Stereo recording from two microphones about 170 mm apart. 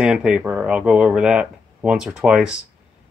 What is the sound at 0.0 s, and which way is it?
Speech, 5° right (ahead or behind).